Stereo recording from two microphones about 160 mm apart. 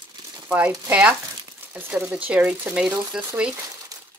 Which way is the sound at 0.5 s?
10° right (ahead or behind).